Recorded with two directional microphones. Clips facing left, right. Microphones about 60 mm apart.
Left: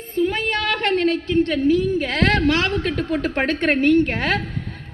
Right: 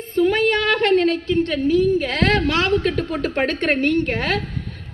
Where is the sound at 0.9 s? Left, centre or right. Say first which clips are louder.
Right 1 dB; centre.